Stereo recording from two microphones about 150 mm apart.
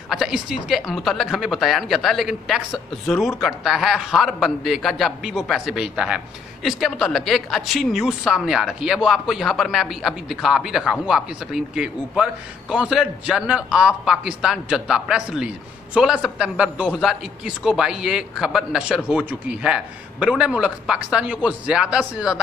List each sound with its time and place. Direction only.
0.1 s a man's voice: 5° right (ahead or behind)